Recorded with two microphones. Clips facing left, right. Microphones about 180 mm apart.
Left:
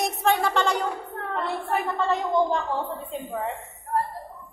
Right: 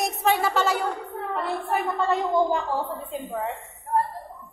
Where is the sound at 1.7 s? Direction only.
5° right (ahead or behind).